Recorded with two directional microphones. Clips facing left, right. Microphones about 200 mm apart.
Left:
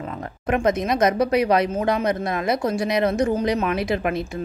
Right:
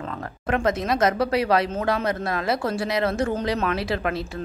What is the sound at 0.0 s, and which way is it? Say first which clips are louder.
A woman's voice: left 2 dB; 15° left (ahead or behind).